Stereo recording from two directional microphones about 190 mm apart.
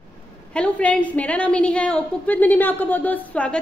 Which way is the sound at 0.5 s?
5° left (ahead or behind).